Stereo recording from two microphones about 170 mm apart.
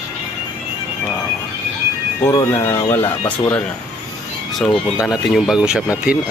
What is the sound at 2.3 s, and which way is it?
Speech, 15° left (ahead or behind).